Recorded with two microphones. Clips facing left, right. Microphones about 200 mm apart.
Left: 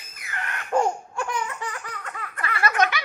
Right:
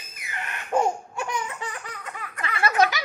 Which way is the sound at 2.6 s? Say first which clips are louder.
Right 2 dB; 30° right (ahead or behind).